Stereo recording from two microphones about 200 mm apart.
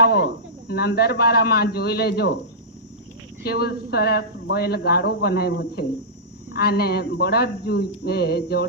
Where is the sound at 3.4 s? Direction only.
50° left (ahead or behind).